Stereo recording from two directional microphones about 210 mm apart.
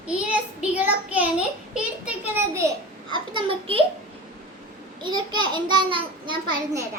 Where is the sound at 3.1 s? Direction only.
25° right (ahead or behind).